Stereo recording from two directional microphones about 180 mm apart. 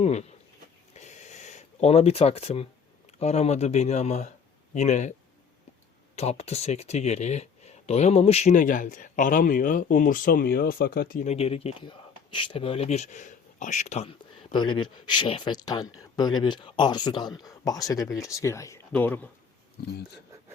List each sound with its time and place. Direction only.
0.0 s speech: 40° left (ahead or behind)
0.9 s a sound: 40° left (ahead or behind)
3.2 s speech: 35° left (ahead or behind)
6.1 s speech: 35° left (ahead or behind); by 19.3 s 10° left (ahead or behind)